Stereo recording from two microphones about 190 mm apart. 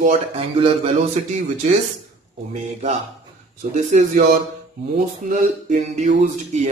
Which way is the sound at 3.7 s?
40° right (ahead or behind).